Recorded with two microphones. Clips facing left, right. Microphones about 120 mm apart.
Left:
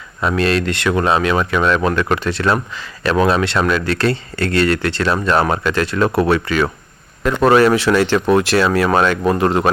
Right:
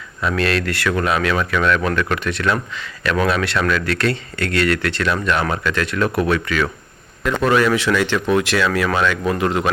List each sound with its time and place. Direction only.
0.2 s speech: 25° left (ahead or behind)